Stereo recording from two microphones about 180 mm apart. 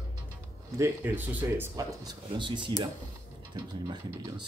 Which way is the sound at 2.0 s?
25° right (ahead or behind).